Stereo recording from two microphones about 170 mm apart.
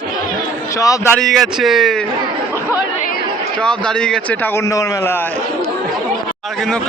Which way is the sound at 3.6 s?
5° left (ahead or behind).